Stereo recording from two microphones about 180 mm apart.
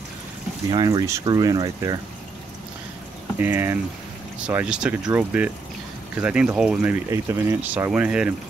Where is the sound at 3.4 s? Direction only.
15° right (ahead or behind).